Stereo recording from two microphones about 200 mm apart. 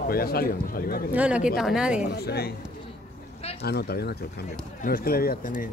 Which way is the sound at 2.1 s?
50° left (ahead or behind).